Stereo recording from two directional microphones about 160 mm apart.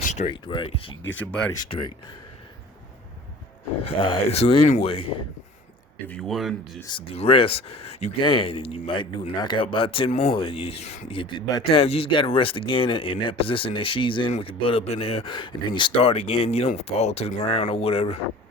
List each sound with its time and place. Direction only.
0.0 s a sound: 45° left (ahead or behind)
0.4 s speech: 30° left (ahead or behind)
1.2 s speech: 10° left (ahead or behind)
1.5 s speech: 30° left (ahead or behind)
3.8 s speech: 30° left (ahead or behind)
6.1 s speech: 5° left (ahead or behind)
6.8 s speech: 30° left (ahead or behind)